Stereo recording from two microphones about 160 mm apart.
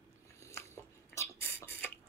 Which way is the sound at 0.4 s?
15° left (ahead or behind).